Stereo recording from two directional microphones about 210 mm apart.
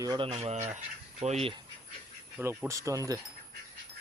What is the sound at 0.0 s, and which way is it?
Speech, 20° right (ahead or behind).